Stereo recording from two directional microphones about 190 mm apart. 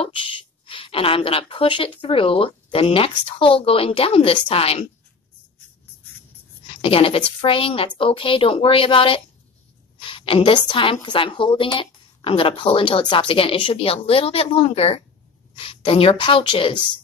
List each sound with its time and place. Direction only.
0.0 s a woman's voice: 25° left (ahead or behind)
6.8 s a woman's voice: 30° left (ahead or behind)